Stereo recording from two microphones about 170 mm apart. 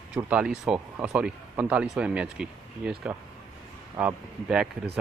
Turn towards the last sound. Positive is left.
turn(degrees=-5)  # may be behind; listen again after turning